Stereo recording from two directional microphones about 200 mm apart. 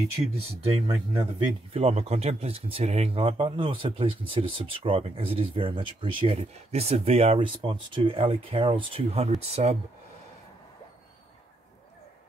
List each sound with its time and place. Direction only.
0.4 s speech: 30° right (ahead or behind)